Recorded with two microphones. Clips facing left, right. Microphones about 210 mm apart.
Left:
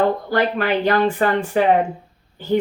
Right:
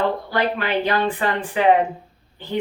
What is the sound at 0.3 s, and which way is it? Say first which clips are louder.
Speech: left 3 dB; 45° left (ahead or behind).